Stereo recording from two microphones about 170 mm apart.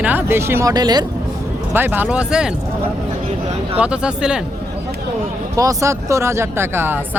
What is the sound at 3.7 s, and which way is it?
Speech, 5° right (ahead or behind).